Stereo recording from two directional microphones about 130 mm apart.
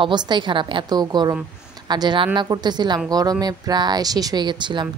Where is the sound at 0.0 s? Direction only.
35° right (ahead or behind).